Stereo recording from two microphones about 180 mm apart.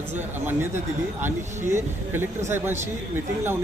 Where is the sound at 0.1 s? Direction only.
10° right (ahead or behind).